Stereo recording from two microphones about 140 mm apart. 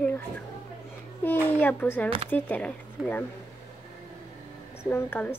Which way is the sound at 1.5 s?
10° left (ahead or behind).